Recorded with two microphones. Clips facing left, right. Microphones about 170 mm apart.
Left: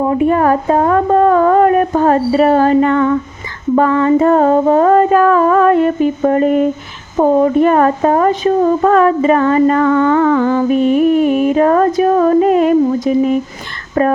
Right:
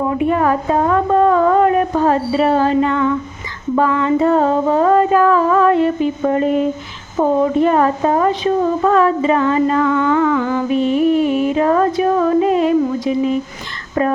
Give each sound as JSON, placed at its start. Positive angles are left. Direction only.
{"t": 0.1, "sound": "a woman's voice", "side_deg": 45}